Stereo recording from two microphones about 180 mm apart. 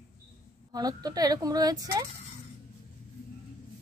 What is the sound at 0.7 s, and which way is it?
Speech, 20° right (ahead or behind).